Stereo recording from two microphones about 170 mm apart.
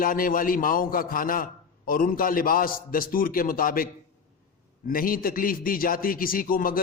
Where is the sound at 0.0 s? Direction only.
55° left (ahead or behind).